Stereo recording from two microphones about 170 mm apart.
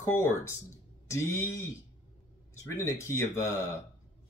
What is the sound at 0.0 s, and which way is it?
Speech, 15° left (ahead or behind).